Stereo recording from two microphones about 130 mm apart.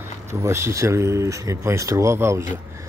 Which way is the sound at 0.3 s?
20° right (ahead or behind).